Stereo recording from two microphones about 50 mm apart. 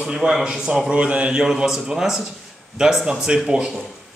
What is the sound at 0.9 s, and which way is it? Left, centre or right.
Speech, right.